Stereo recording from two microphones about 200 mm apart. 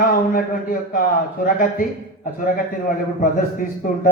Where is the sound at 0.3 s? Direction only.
45° left (ahead or behind).